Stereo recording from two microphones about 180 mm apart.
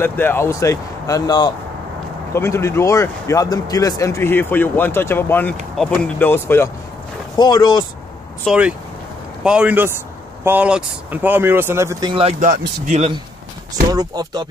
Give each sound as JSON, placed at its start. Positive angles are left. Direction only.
{"t": 0.0, "sound": "speech", "side_deg": 10}
{"t": 7.3, "sound": "speech", "side_deg": 25}
{"t": 8.5, "sound": "speech", "side_deg": -5}
{"t": 12.1, "sound": "speech", "side_deg": -35}
{"t": 13.8, "sound": "speech", "side_deg": -20}